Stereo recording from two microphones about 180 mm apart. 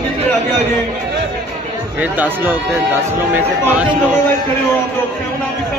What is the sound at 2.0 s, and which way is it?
Speech, 10° right (ahead or behind).